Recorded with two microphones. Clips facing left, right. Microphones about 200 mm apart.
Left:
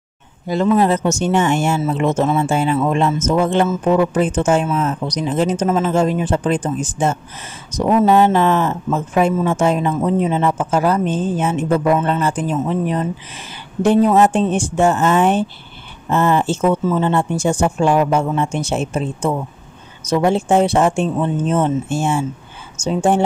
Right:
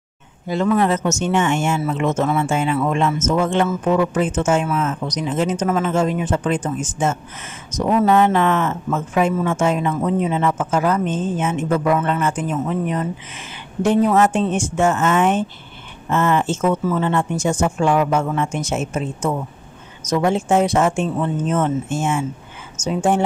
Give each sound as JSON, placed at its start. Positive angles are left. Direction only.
{"t": 0.7, "sound": "speech", "side_deg": 30}